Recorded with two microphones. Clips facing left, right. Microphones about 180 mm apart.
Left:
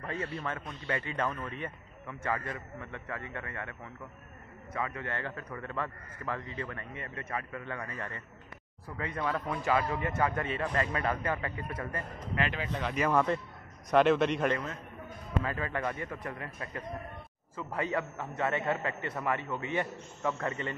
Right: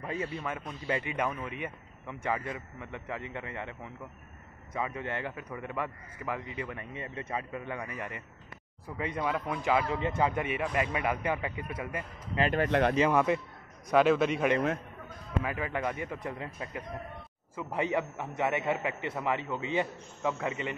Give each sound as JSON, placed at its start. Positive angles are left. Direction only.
{"t": 0.2, "sound": "a man's voice", "side_deg": 0}
{"t": 0.8, "sound": "a man's voice", "side_deg": -15}
{"t": 12.5, "sound": "speech", "side_deg": -65}
{"t": 13.1, "sound": "a man's voice", "side_deg": -10}
{"t": 15.4, "sound": "a man's voice", "side_deg": -15}